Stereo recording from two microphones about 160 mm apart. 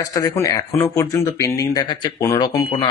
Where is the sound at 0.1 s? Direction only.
20° left (ahead or behind).